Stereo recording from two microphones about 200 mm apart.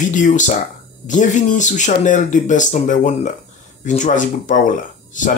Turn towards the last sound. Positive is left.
turn(degrees=40)  # may be behind; listen again after turning